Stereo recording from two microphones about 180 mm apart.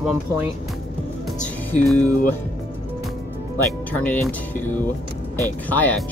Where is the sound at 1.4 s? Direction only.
5° left (ahead or behind).